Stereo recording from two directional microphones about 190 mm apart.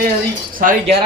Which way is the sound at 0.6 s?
45° right (ahead or behind).